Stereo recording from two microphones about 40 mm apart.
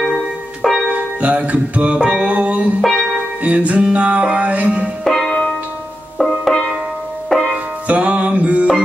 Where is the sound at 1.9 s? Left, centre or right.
Centre.